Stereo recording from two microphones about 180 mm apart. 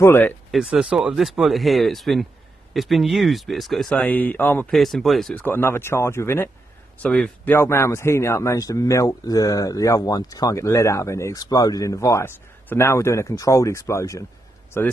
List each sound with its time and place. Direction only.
0.0 s a man's voice: 15° left (ahead or behind)
0.5 s a man's voice: centre (ahead or behind); by 14.2 s 15° left (ahead or behind)